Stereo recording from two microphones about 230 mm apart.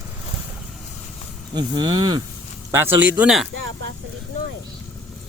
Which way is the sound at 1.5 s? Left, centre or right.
Centre.